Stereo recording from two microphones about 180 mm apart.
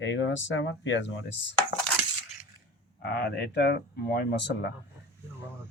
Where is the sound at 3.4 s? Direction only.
70° left (ahead or behind).